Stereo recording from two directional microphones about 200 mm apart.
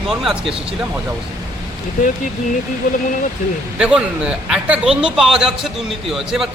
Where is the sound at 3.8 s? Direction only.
5° right (ahead or behind).